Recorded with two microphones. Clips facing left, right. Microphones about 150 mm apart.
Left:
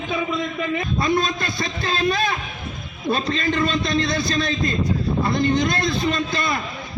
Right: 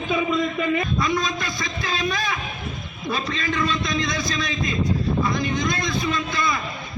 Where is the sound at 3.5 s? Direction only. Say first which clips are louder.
Left 2 dB; 30° left (ahead or behind).